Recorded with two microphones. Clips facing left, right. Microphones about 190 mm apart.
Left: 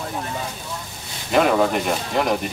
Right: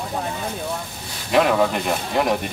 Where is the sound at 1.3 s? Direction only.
Centre (ahead or behind).